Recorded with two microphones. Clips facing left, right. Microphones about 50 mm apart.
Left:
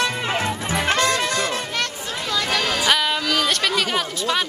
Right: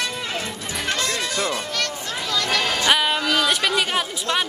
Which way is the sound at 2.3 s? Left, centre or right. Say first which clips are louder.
Even; centre.